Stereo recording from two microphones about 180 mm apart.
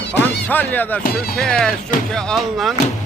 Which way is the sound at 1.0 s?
55° left (ahead or behind).